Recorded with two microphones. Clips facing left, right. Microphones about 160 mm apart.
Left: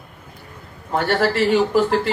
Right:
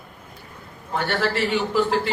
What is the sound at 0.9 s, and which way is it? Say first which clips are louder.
Speech: left 5 dB; 50° left (ahead or behind).